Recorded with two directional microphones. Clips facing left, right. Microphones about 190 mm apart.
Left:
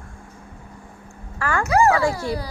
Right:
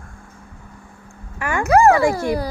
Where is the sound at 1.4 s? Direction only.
20° right (ahead or behind).